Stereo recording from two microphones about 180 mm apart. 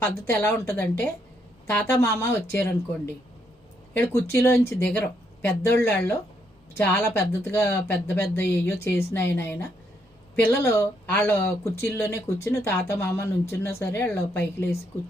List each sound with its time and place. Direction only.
0.3 s speech: 15° left (ahead or behind)
3.9 s speech: 15° left (ahead or behind)